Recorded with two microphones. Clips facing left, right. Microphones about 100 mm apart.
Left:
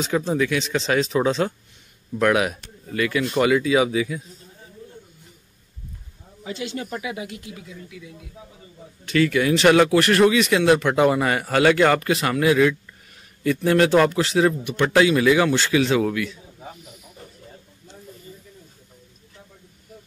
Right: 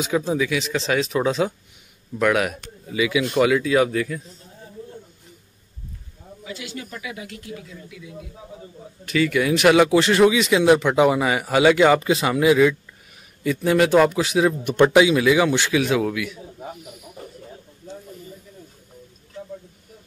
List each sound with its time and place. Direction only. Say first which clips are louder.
0.0 s a man's voice: even; 5° right (ahead or behind)
6.4 s speech: left 5 dB; 25° left (ahead or behind)
7.5 s speech: right 4 dB; 10° left (ahead or behind)
9.0 s a man's voice: left 1 dB; centre (ahead or behind)
9.8 s a man's voice: right 1 dB; 15° right (ahead or behind)